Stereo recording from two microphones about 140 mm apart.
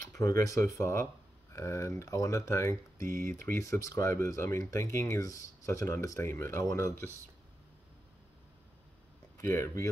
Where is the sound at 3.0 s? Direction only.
80° right.